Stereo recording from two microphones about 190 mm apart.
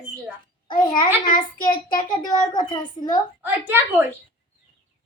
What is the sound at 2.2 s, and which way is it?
Speech, 20° left (ahead or behind).